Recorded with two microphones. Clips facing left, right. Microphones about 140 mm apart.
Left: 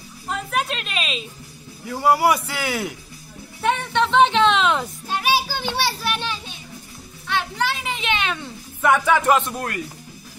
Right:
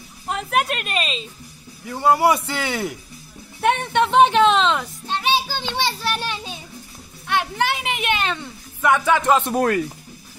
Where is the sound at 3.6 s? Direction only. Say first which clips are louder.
Right 2 dB; 55° right (ahead or behind).